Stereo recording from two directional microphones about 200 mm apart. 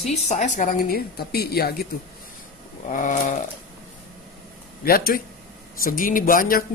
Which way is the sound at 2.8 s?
40° left (ahead or behind).